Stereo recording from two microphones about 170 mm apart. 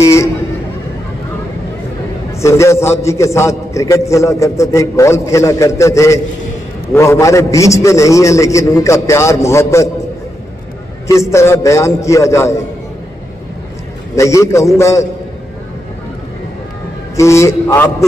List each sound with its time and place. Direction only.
0.0 s a sound: 15° left (ahead or behind)
2.3 s a man's voice: 15° left (ahead or behind)
11.1 s a man's voice: 15° left (ahead or behind)
14.1 s a man's voice: 15° left (ahead or behind)
17.2 s a man's voice: 15° left (ahead or behind)